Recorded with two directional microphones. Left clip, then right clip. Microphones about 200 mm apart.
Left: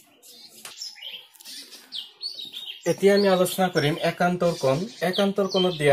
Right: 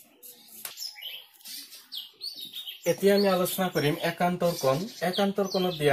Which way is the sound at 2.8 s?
15° left (ahead or behind).